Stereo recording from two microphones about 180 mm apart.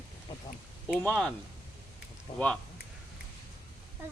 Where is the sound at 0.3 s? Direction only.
25° left (ahead or behind).